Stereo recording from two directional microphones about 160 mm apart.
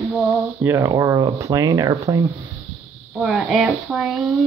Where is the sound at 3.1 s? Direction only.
Centre (ahead or behind).